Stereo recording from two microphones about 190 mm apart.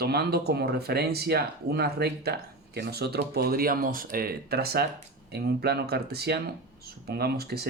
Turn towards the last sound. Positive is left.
turn(degrees=-55)  # may be behind; listen again after turning